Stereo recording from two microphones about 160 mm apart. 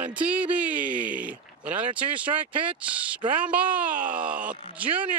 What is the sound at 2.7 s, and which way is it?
Speech, 5° right (ahead or behind).